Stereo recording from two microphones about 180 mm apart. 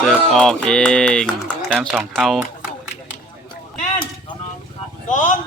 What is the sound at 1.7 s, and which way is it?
Speech, 10° right (ahead or behind).